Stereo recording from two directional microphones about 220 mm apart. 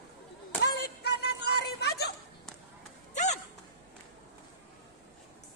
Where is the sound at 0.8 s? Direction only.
50° left (ahead or behind).